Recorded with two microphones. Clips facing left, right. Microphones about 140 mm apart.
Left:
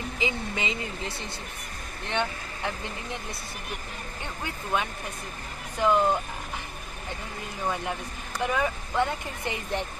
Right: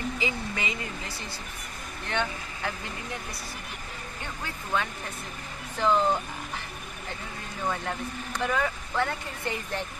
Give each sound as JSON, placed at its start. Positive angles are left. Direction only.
{"t": 0.2, "sound": "speech", "side_deg": 20}
{"t": 4.7, "sound": "speech", "side_deg": 15}
{"t": 8.4, "sound": "speech", "side_deg": 15}